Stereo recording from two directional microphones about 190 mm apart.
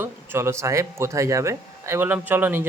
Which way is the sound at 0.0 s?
15° right (ahead or behind).